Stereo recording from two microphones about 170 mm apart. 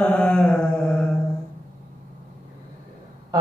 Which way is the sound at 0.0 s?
5° left (ahead or behind).